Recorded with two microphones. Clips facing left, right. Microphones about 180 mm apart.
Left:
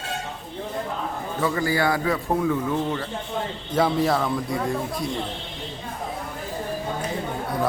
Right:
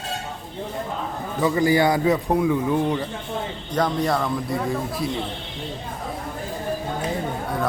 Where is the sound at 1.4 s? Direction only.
15° right (ahead or behind).